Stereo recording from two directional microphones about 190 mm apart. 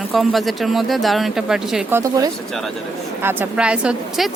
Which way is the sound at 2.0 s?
15° right (ahead or behind).